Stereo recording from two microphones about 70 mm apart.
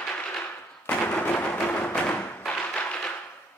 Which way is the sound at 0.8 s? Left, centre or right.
Left.